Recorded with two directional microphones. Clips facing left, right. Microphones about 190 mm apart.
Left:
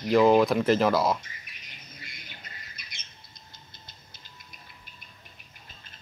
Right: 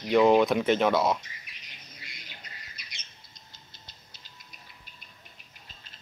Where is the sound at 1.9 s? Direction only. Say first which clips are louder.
Left 1 dB; 50° left (ahead or behind).